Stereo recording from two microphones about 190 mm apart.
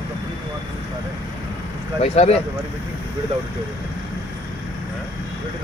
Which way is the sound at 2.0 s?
35° left (ahead or behind).